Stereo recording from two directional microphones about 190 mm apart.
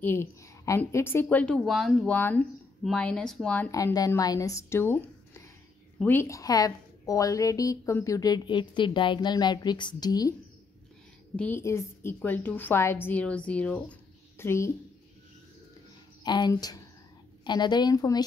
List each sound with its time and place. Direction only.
0.0 s a woman's voice: 15° left (ahead or behind)
3.7 s a woman's voice: 20° left (ahead or behind)
11.3 s a woman's voice: 10° left (ahead or behind)
16.3 s a woman's voice: 20° left (ahead or behind)